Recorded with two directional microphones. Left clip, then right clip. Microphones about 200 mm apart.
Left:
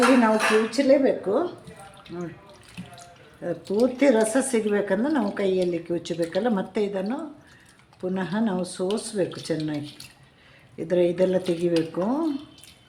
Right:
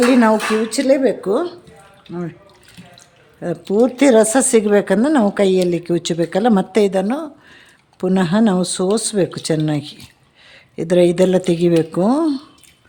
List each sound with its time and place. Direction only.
0.2 s a woman's voice: 60° right (ahead or behind)
3.4 s a woman's voice: 55° right (ahead or behind)